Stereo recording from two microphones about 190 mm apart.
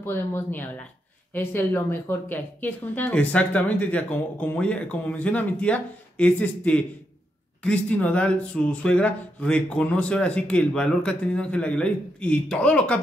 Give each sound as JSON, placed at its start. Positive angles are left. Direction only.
{"t": 0.0, "sound": "speech", "side_deg": 10}